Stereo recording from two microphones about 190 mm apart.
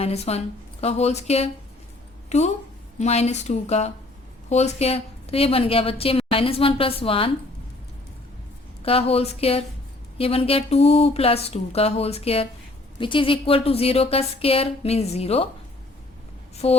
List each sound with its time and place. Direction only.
0.0 s a woman's voice: 35° left (ahead or behind)
8.8 s a woman's voice: 30° left (ahead or behind)
16.6 s a woman's voice: 30° left (ahead or behind)